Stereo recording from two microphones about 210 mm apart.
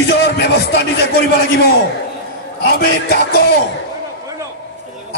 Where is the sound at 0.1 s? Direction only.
55° left (ahead or behind).